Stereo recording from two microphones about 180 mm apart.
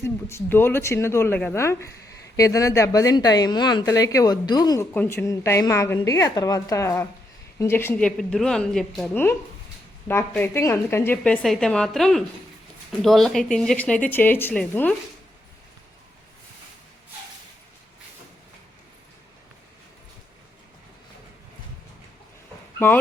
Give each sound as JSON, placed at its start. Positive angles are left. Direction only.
{"t": 0.0, "sound": "a woman's voice", "side_deg": 15}
{"t": 10.1, "sound": "a woman's voice", "side_deg": 10}